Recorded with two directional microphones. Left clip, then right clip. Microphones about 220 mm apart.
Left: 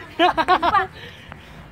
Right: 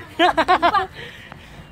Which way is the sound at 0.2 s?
30° right (ahead or behind).